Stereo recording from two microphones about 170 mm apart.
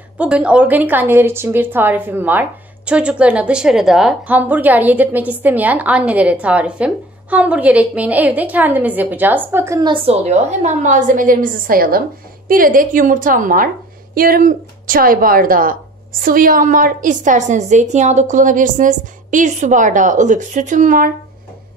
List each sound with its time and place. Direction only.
0.2 s a woman's voice: 5° right (ahead or behind); by 21.1 s 50° right (ahead or behind)